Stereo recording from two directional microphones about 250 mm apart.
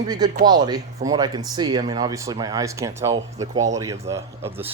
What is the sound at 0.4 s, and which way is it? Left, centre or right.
Speech, centre.